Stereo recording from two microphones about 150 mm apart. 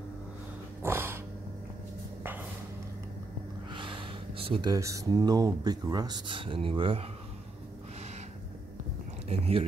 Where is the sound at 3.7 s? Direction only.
35° right (ahead or behind).